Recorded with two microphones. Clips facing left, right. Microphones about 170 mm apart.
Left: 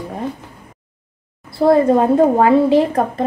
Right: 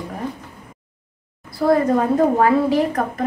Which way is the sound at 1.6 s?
25° left (ahead or behind).